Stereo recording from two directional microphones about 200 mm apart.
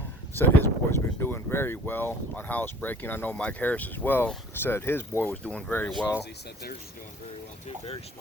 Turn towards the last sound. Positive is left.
turn(degrees=30)  # may be behind; listen again after turning